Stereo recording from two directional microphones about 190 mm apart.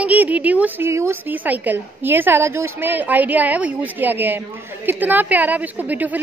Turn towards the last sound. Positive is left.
turn(degrees=-10)  # may be behind; listen again after turning